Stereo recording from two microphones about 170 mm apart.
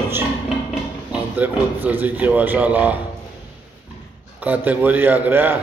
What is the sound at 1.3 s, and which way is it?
A man's voice, 10° right (ahead or behind).